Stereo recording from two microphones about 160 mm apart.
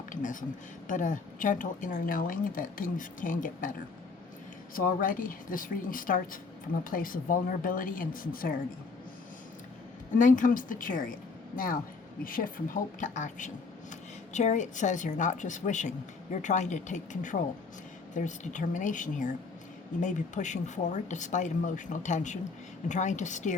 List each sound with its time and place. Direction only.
0.1 s a sound: 55° left (ahead or behind)
0.9 s a woman's voice: 55° left (ahead or behind)
10.2 s a woman's voice: 55° left (ahead or behind)